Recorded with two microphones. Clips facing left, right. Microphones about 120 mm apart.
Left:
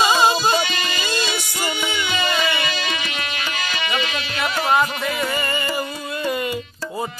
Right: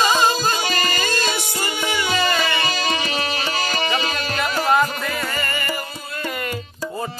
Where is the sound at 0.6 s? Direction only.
40° right (ahead or behind).